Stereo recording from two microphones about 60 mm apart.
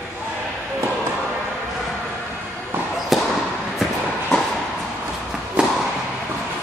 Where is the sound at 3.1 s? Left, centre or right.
Centre.